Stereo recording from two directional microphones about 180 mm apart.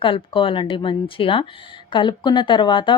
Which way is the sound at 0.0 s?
30° left (ahead or behind).